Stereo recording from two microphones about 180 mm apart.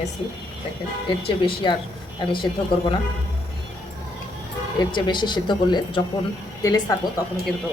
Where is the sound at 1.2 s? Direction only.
30° left (ahead or behind).